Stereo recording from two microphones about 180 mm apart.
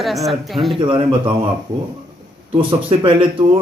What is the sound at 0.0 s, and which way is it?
Speech, centre (ahead or behind).